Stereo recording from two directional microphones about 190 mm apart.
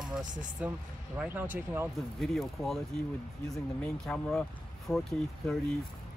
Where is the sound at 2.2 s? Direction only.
Centre (ahead or behind).